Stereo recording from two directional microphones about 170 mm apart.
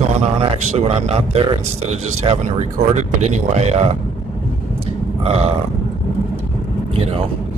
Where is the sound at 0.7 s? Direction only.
40° right (ahead or behind).